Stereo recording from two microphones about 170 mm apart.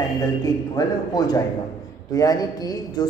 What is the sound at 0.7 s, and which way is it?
Speech, 20° left (ahead or behind).